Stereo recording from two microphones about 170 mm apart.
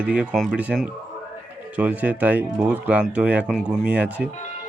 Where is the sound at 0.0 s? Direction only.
5° right (ahead or behind).